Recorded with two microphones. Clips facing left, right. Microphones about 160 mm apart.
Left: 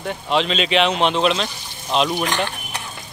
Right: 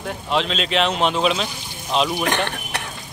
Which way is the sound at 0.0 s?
Centre (ahead or behind).